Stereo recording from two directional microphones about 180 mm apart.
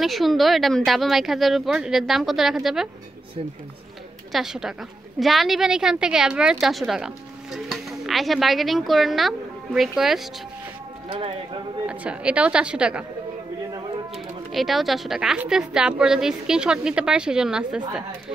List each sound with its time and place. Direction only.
0.0 s speech: centre (ahead or behind)
4.3 s speech: centre (ahead or behind)
11.1 s speech: 30° right (ahead or behind)
11.8 s speech: 5° right (ahead or behind)
13.7 s a sound: 20° right (ahead or behind)
14.1 s speech: centre (ahead or behind)